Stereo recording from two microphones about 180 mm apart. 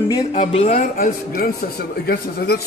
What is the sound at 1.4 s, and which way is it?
Speech, 60° left (ahead or behind).